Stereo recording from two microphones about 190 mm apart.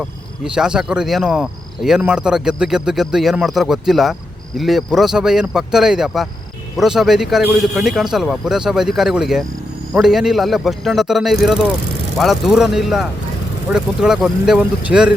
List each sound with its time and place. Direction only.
0.4 s speech: 5° right (ahead or behind)